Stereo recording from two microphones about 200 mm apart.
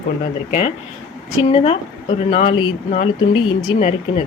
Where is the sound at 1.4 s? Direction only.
25° left (ahead or behind).